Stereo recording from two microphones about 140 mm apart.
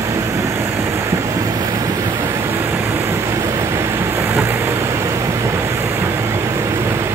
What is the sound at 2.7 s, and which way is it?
Vehicle, 20° right (ahead or behind).